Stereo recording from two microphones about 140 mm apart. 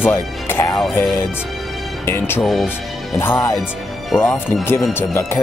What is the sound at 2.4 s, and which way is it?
Speech, centre (ahead or behind).